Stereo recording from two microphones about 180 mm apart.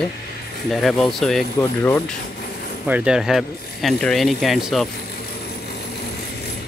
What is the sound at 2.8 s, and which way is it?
Speech, 5° right (ahead or behind).